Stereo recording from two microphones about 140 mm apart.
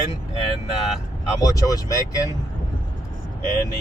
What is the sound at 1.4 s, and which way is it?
Speech, 25° left (ahead or behind).